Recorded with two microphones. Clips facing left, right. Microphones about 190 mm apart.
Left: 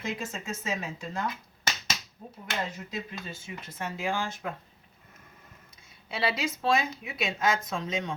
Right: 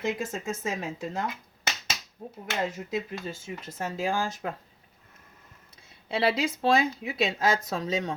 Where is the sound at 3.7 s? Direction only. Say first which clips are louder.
Right 3 dB; 40° right (ahead or behind).